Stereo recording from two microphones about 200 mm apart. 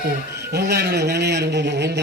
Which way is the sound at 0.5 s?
55° right (ahead or behind).